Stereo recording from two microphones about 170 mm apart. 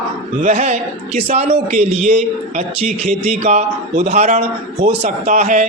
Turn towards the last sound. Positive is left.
turn(degrees=-45)  # may be behind; listen again after turning